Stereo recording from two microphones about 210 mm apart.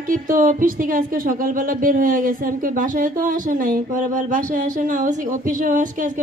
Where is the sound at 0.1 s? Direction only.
40° right (ahead or behind).